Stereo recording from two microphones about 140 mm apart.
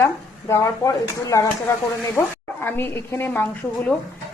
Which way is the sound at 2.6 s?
15° left (ahead or behind).